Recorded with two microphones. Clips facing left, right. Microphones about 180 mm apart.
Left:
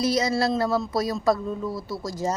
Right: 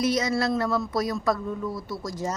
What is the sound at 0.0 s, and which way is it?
Speech, 35° left (ahead or behind).